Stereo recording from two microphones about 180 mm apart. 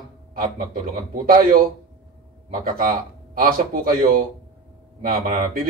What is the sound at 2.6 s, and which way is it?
Speech, 50° right (ahead or behind).